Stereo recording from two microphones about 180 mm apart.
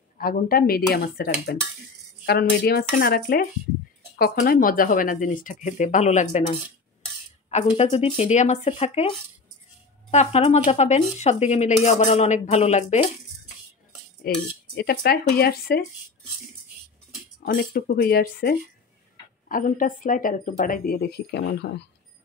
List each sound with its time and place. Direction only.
0.2 s speech: 55° left (ahead or behind)
7.7 s speech: 35° left (ahead or behind)
10.1 s speech: 35° left (ahead or behind)
14.2 s speech: 55° left (ahead or behind)
17.5 s speech: 55° left (ahead or behind); by 21.8 s 70° left (ahead or behind)